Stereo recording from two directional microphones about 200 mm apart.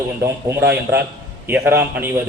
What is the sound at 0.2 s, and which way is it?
A man's voice, 15° right (ahead or behind).